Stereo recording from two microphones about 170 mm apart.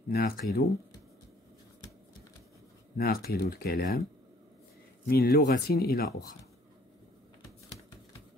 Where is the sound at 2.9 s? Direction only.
60° left (ahead or behind).